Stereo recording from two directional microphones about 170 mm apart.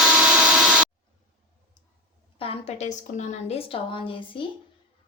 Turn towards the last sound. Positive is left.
turn(degrees=30)  # may be behind; listen again after turning